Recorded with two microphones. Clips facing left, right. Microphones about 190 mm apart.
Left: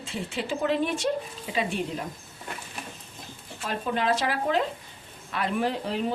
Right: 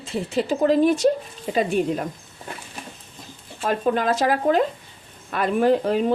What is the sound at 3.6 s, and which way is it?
Speech, 50° right (ahead or behind).